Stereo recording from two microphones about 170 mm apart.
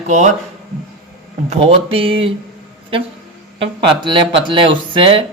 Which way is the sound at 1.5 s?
35° right (ahead or behind).